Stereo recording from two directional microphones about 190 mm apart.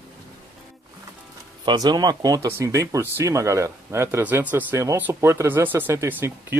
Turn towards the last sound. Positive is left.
turn(degrees=-10)  # may be behind; listen again after turning